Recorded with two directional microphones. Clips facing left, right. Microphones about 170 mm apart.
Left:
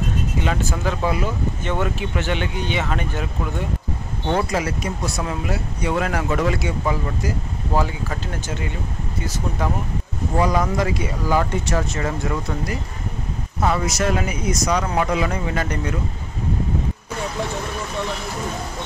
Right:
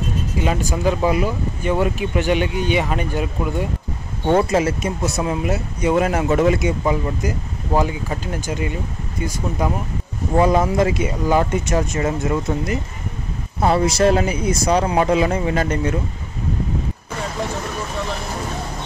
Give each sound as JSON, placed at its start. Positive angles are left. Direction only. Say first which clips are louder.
{"t": 0.4, "sound": "speech", "louder": "right 5 dB", "side_deg": -15}
{"t": 4.4, "sound": "speech", "louder": "right 5 dB", "side_deg": -25}
{"t": 10.4, "sound": "speech", "louder": "right 4 dB", "side_deg": -25}